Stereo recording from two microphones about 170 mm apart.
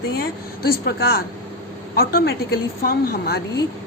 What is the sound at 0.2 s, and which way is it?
A woman's voice, 65° left (ahead or behind).